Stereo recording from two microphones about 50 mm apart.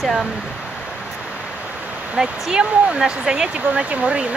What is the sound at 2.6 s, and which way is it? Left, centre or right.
Speech, right.